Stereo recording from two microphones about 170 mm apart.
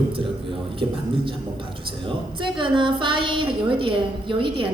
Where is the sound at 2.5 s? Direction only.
30° right (ahead or behind).